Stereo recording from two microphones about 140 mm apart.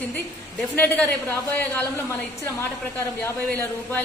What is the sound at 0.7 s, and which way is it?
A woman's voice, 10° left (ahead or behind).